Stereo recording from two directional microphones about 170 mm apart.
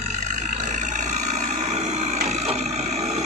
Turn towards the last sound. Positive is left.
turn(degrees=-40)  # may be behind; listen again after turning